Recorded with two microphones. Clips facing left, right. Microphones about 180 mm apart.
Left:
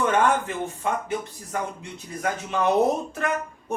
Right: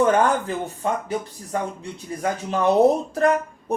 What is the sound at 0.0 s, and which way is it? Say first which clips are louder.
Speech: right 3 dB; 35° right (ahead or behind).